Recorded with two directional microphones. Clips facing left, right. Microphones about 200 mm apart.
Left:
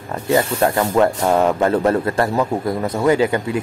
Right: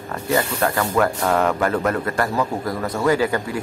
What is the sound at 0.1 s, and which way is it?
Speech, 25° left (ahead or behind).